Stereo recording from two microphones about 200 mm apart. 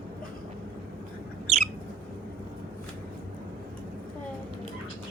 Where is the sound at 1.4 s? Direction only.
35° right (ahead or behind).